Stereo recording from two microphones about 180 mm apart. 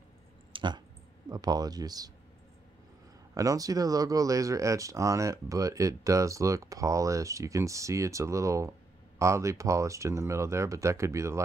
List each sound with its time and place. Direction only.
0.5 s a sound: 25° right (ahead or behind)
1.3 s speech: 20° right (ahead or behind)
3.3 s speech: 20° right (ahead or behind)